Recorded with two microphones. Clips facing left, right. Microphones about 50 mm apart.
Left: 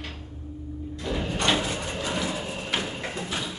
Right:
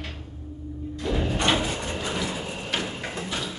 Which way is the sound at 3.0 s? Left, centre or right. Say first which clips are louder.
Even; centre.